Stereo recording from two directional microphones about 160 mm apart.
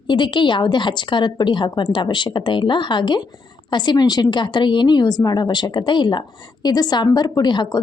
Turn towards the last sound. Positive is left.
turn(degrees=25)  # may be behind; listen again after turning